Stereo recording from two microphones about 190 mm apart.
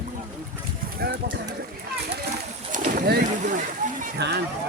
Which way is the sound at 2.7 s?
45° right (ahead or behind).